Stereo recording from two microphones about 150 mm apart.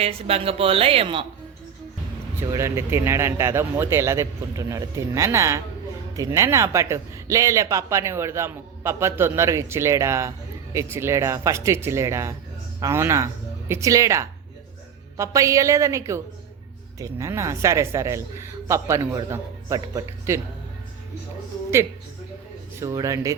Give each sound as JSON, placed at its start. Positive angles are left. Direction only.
{"t": 0.0, "sound": "a woman's voice", "side_deg": -40}
{"t": 2.5, "sound": "a man's voice", "side_deg": -20}
{"t": 22.7, "sound": "speech", "side_deg": -20}